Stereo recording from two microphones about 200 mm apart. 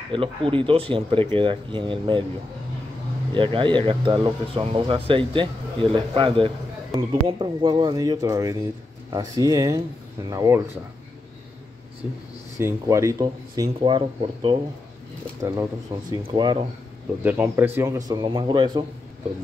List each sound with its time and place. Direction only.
0.1 s speech: 25° right (ahead or behind)
3.3 s speech: 25° right (ahead or behind)
12.5 s speech: 15° right (ahead or behind)
17.2 s speech: 10° right (ahead or behind)